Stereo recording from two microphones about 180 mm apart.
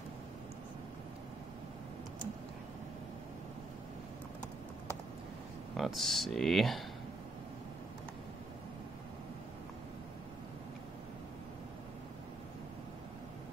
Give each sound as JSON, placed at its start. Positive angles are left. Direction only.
{"t": 5.8, "sound": "speech", "side_deg": 0}